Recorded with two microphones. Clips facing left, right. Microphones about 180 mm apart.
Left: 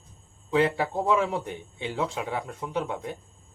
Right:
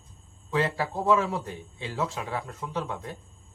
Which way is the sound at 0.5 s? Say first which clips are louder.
Left 4 dB; 20° left (ahead or behind).